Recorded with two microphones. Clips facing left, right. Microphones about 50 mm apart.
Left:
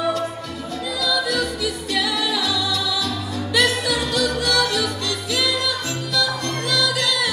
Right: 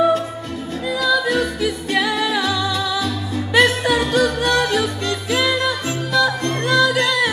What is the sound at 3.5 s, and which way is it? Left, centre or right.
Music, right.